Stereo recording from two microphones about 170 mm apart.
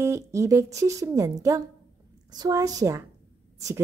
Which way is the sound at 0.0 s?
15° right (ahead or behind).